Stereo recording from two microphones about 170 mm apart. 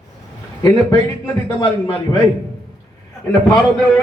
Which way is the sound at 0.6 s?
20° left (ahead or behind).